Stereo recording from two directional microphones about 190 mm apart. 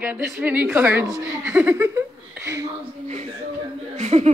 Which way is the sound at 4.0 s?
35° right (ahead or behind).